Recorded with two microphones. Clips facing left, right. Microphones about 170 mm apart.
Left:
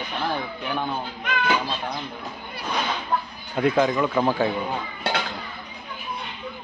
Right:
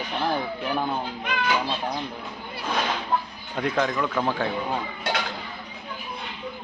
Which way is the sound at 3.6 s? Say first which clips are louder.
Left 4 dB; 10° left (ahead or behind).